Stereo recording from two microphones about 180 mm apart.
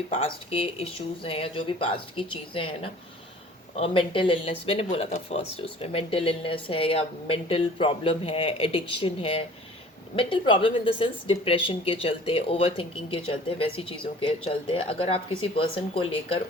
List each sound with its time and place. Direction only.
0.1 s a woman's voice: 30° left (ahead or behind)
3.8 s a woman's voice: 30° left (ahead or behind)